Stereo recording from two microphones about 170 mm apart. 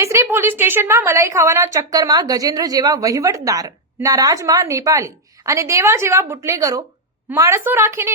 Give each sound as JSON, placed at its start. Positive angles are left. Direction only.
{"t": 0.0, "sound": "a woman's voice", "side_deg": -15}